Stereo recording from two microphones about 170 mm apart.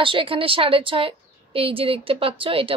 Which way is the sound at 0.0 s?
30° right (ahead or behind).